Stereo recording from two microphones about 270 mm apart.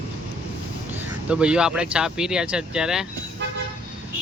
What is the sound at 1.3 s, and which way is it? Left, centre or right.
Speech, centre.